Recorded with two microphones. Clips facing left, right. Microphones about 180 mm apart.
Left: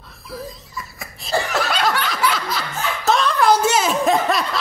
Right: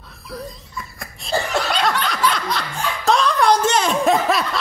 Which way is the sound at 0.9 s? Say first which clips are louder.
Left 1 dB; centre (ahead or behind).